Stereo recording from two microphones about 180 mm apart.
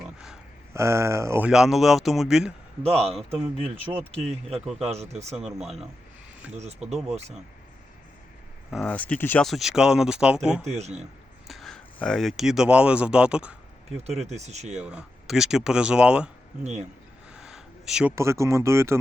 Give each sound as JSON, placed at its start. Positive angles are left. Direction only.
{"t": 0.7, "sound": "speech", "side_deg": -15}
{"t": 2.8, "sound": "speech", "side_deg": -35}
{"t": 4.2, "sound": "speech", "side_deg": -35}
{"t": 6.6, "sound": "speech", "side_deg": -35}
{"t": 8.7, "sound": "speech", "side_deg": 5}
{"t": 10.6, "sound": "speech", "side_deg": -40}
{"t": 11.4, "sound": "speech", "side_deg": 0}
{"t": 14.3, "sound": "speech", "side_deg": -40}
{"t": 14.8, "sound": "speech", "side_deg": -5}
{"t": 17.3, "sound": "a sound", "side_deg": -5}
{"t": 18.1, "sound": "speech", "side_deg": -15}